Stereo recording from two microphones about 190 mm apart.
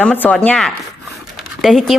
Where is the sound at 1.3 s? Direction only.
Centre (ahead or behind).